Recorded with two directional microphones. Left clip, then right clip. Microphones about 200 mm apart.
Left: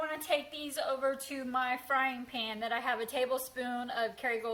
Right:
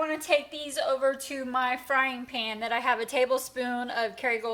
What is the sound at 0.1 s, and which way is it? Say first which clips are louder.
A woman's voice: right 7 dB; 30° right (ahead or behind).